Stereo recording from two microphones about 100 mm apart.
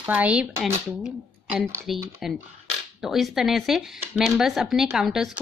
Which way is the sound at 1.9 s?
Centre (ahead or behind).